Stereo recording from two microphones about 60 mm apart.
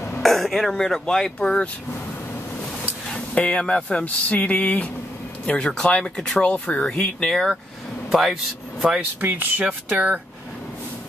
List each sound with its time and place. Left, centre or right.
0.2 s speech: centre
3.3 s speech: centre
6.5 s speech: left
6.8 s speech: centre
7.2 s speech: centre
9.2 s speech: right
9.9 s speech: right